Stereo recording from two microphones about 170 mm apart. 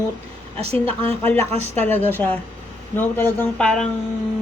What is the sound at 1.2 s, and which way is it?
Speech, 15° left (ahead or behind).